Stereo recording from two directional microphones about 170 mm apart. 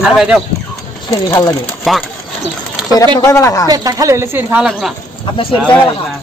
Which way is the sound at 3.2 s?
20° left (ahead or behind).